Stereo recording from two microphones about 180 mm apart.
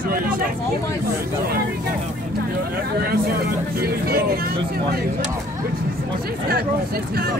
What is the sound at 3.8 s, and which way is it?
Vehicle, 55° right (ahead or behind).